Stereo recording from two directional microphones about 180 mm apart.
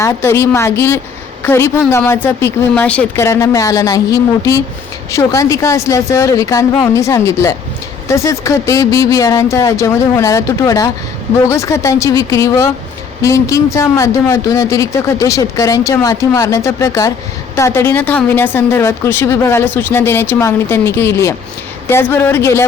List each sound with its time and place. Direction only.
0.0 s a man's voice: 15° left (ahead or behind)